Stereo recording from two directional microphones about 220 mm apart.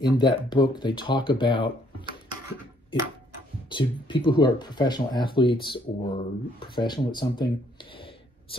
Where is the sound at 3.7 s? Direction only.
20° left (ahead or behind).